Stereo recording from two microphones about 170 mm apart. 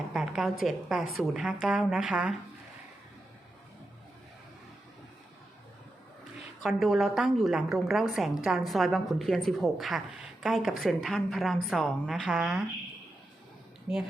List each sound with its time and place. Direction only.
0.1 s a woman's voice: centre (ahead or behind)
6.6 s a woman's voice: centre (ahead or behind)
13.9 s speech: 10° right (ahead or behind)